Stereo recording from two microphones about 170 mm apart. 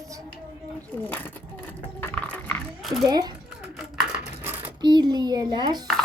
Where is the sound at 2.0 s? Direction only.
5° left (ahead or behind).